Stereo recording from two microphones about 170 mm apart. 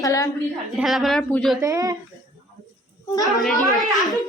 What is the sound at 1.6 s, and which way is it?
Speech, 20° right (ahead or behind).